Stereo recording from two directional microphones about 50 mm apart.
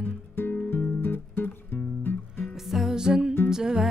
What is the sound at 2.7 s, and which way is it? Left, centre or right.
Music, centre.